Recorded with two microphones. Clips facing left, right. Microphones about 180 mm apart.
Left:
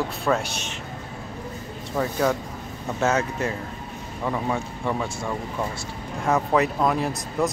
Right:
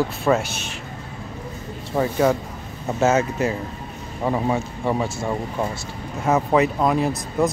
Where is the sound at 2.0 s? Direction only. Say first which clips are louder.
Right 4 dB; 15° right (ahead or behind).